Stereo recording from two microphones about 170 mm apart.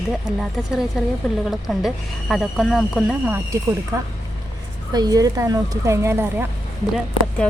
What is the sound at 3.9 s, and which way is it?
Speech, 20° right (ahead or behind).